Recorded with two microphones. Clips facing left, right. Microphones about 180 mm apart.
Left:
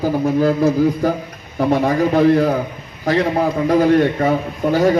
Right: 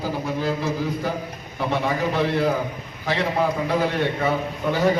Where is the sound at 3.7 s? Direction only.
40° left (ahead or behind).